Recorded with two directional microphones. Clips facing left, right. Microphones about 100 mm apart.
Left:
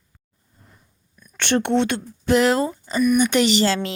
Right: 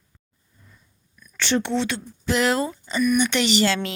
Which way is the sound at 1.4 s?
55° left (ahead or behind).